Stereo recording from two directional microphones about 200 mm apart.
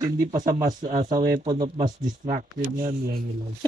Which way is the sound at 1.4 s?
20° right (ahead or behind).